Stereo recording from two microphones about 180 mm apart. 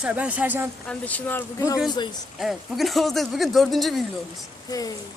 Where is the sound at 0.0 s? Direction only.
5° right (ahead or behind).